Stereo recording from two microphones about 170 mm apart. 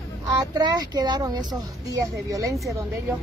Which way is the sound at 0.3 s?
20° right (ahead or behind).